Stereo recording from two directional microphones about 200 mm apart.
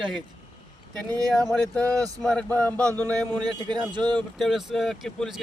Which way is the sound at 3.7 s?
20° right (ahead or behind).